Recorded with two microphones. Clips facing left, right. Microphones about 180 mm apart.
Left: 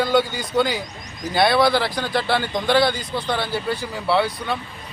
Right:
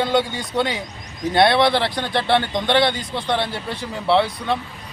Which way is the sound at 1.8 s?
Centre (ahead or behind).